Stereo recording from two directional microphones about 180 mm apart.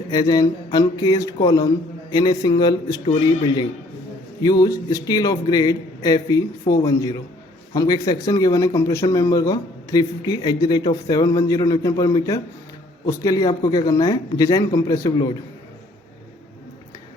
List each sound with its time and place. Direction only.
0.1 s a man's voice: 20° left (ahead or behind)